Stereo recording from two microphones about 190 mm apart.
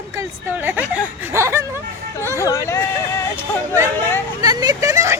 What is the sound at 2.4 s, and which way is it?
Speech, 15° left (ahead or behind).